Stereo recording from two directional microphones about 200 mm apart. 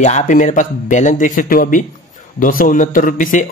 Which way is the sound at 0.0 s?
35° left (ahead or behind).